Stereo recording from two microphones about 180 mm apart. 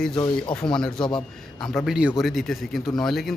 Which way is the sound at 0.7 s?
5° left (ahead or behind).